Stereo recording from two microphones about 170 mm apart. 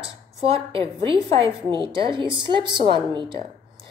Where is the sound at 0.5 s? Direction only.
30° right (ahead or behind).